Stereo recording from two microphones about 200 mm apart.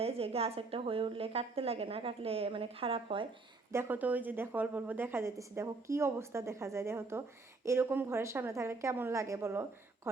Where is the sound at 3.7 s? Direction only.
10° right (ahead or behind).